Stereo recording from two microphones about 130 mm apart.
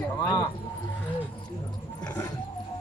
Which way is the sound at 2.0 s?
20° left (ahead or behind).